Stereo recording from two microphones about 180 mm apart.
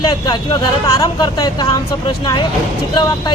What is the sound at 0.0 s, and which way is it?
Speech, 25° left (ahead or behind).